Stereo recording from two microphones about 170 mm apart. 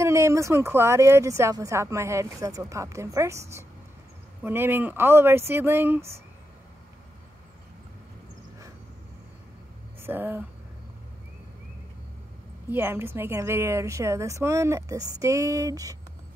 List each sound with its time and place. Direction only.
0.0 s speech: 15° right (ahead or behind)
10.0 s speech: 10° right (ahead or behind)
12.6 s speech: 15° right (ahead or behind)